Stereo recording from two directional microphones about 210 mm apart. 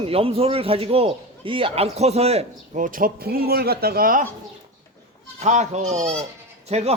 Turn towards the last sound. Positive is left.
turn(degrees=-30)  # may be behind; listen again after turning